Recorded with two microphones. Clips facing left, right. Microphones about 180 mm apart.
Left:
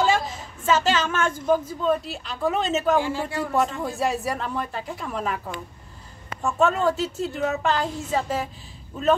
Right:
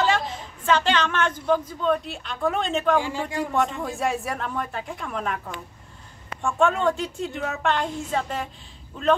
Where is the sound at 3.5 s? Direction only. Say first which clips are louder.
Left 2 dB; centre (ahead or behind).